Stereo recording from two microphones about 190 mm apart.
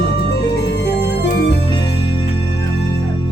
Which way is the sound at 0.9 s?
60° left (ahead or behind).